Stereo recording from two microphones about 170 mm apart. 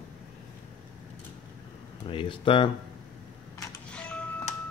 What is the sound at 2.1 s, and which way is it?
Speech, 30° left (ahead or behind).